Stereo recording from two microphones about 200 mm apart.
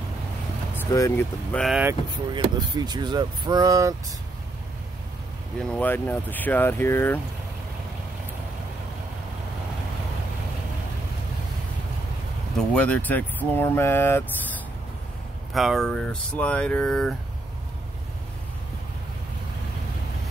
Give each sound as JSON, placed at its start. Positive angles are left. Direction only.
{"t": 0.7, "sound": "speech", "side_deg": 15}
{"t": 2.3, "sound": "speech", "side_deg": -20}
{"t": 5.6, "sound": "speech", "side_deg": 5}
{"t": 12.5, "sound": "speech", "side_deg": 5}
{"t": 15.5, "sound": "speech", "side_deg": 0}